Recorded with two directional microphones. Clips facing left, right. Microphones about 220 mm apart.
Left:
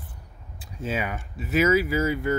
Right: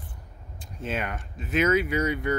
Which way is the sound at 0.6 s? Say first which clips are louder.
Left 2 dB; 5° left (ahead or behind).